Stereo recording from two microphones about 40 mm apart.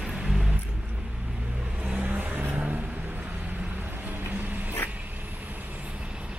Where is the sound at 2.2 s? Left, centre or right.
Right.